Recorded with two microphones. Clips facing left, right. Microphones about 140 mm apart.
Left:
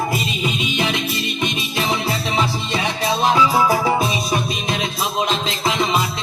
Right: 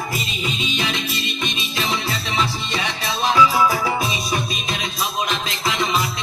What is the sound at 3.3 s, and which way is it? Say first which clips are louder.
Music: right 1 dB; 25° left (ahead or behind).